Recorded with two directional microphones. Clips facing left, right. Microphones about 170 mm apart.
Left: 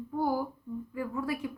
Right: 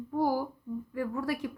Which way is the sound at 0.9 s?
40° right (ahead or behind).